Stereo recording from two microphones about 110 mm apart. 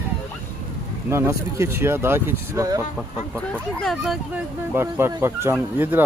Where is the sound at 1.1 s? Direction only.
25° right (ahead or behind).